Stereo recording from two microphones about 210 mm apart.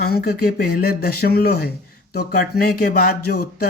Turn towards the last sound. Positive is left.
turn(degrees=45)  # may be behind; listen again after turning